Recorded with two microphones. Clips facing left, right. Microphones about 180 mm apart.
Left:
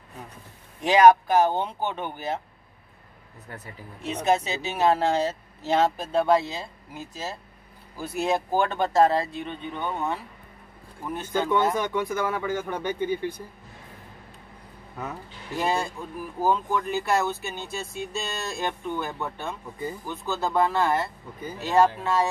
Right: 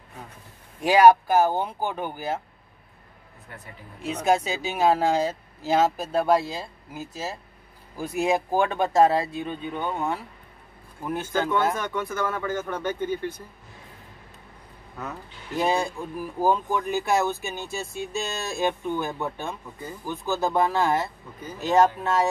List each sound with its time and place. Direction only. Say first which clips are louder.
0.8 s speech: even; 10° right (ahead or behind)
4.0 s speech: right 1 dB; 10° right (ahead or behind)
11.4 s speech: left 4 dB; 15° left (ahead or behind)
15.5 s speech: right 2 dB; 15° right (ahead or behind)